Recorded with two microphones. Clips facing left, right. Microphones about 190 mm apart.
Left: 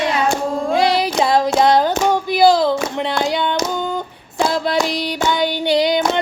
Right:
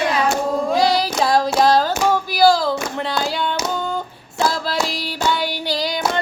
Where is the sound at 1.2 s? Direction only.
20° left (ahead or behind).